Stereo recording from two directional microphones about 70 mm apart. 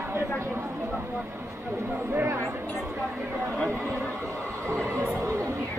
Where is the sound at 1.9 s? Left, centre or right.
Right.